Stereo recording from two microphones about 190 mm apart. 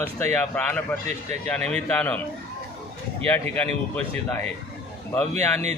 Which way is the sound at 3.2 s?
10° left (ahead or behind).